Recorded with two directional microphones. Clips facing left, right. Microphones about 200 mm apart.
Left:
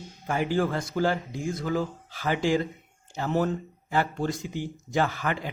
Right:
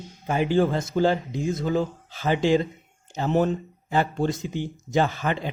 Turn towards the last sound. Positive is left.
turn(degrees=-25)  # may be behind; listen again after turning